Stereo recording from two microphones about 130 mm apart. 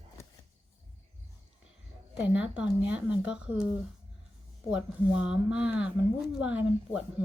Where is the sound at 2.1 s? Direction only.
10° right (ahead or behind).